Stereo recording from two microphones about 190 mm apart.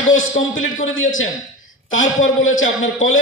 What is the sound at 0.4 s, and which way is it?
A man's voice, 90° left.